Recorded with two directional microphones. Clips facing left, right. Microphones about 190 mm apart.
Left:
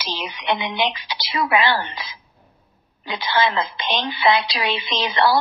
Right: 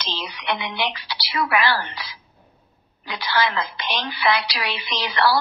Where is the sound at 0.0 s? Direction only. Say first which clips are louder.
Left 2 dB; 15° left (ahead or behind).